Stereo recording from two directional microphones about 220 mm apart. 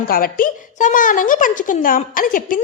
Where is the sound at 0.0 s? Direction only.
40° left (ahead or behind).